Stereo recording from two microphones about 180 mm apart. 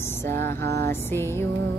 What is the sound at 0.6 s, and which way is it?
Music, 60° right (ahead or behind).